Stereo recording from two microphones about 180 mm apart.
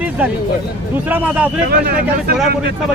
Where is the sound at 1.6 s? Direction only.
55° right (ahead or behind).